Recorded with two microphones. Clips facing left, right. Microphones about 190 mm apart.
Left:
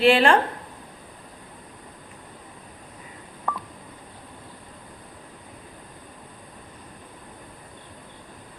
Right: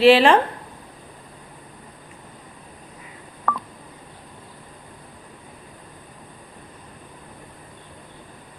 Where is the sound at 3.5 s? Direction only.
60° right (ahead or behind).